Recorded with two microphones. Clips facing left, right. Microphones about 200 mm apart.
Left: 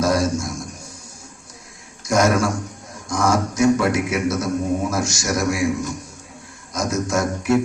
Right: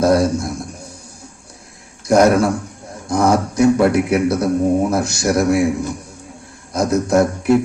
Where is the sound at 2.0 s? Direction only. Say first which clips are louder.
Right 6 dB; 60° right (ahead or behind).